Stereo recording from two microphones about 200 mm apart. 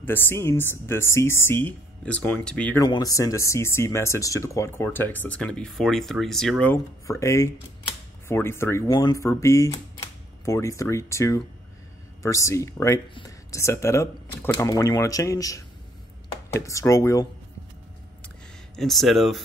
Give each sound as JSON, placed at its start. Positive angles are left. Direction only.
{"t": 0.0, "sound": "speech", "side_deg": 10}
{"t": 2.8, "sound": "speech", "side_deg": 15}
{"t": 18.8, "sound": "speech", "side_deg": 0}